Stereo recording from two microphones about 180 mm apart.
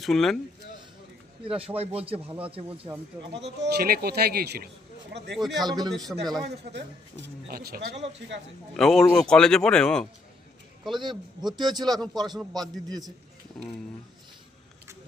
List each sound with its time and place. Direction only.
0.0 s speech: centre (ahead or behind)
1.5 s a man's voice: 30° right (ahead or behind)
3.3 s speech: 75° right (ahead or behind); by 4.7 s 60° right (ahead or behind)
5.1 s speech: 70° right (ahead or behind)
5.4 s speech: centre (ahead or behind)
5.6 s a man's voice: 20° right (ahead or behind)
6.1 s a man's voice: 10° right (ahead or behind)
6.7 s speech: 70° right (ahead or behind)
8.7 s speech: centre (ahead or behind)
11.0 s a man's voice: 25° right (ahead or behind)